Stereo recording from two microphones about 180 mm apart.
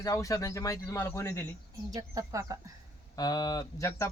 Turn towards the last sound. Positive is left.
turn(degrees=20)  # may be behind; listen again after turning